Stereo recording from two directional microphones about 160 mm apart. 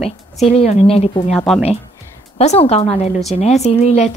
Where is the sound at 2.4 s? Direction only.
40° left (ahead or behind).